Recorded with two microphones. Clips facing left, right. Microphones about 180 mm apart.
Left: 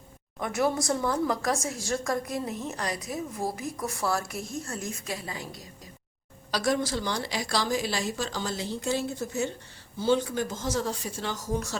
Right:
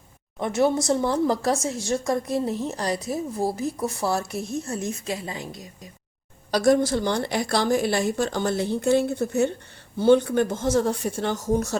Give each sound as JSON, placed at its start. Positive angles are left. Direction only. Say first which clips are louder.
{"t": 0.3, "sound": "a woman's voice", "louder": "right 5 dB", "side_deg": -25}
{"t": 6.5, "sound": "a woman's voice", "louder": "right 8 dB", "side_deg": -50}
{"t": 11.5, "sound": "speech", "louder": "right 7 dB", "side_deg": -45}